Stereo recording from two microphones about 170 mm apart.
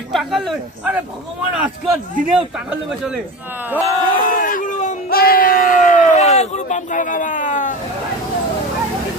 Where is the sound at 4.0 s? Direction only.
50° left (ahead or behind).